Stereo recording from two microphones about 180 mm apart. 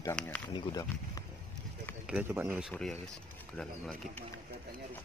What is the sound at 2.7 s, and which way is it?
Speech, 5° left (ahead or behind).